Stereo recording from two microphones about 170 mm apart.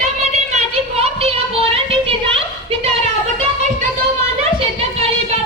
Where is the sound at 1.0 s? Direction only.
35° right (ahead or behind).